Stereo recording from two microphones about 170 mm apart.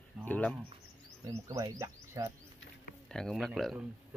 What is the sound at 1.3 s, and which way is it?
Speech, 20° right (ahead or behind).